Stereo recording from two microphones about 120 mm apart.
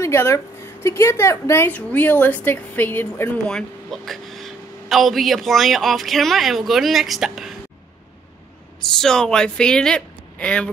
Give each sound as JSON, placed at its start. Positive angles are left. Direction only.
{"t": 0.0, "sound": "a woman's voice", "side_deg": 20}
{"t": 3.4, "sound": "a woman's voice", "side_deg": 5}
{"t": 8.9, "sound": "a woman's voice", "side_deg": 5}